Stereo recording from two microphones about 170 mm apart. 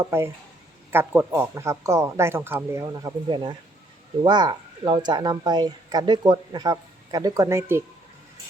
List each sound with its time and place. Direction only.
0.0 s speech: 15° right (ahead or behind)